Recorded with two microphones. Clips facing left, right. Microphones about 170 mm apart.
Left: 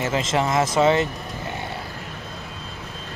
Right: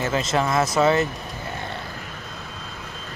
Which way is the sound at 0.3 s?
25° left (ahead or behind).